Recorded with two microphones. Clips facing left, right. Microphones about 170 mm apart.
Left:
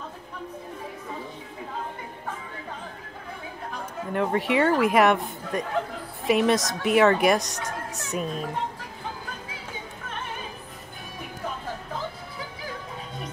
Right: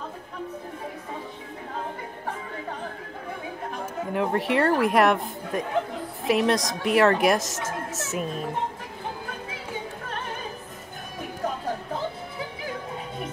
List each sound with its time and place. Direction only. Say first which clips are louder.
4.1 s a man's voice: left 1 dB; centre (ahead or behind)